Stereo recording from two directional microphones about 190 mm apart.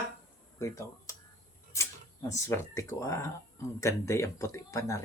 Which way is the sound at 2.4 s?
15° left (ahead or behind).